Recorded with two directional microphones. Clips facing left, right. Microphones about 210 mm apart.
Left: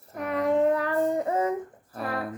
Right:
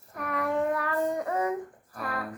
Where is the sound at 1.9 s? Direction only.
25° left (ahead or behind).